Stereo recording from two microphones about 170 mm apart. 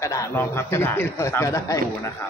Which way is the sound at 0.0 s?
20° left (ahead or behind).